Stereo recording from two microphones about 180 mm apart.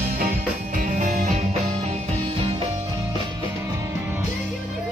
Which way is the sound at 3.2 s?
15° right (ahead or behind).